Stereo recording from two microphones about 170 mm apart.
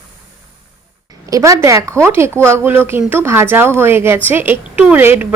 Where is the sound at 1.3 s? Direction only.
20° right (ahead or behind).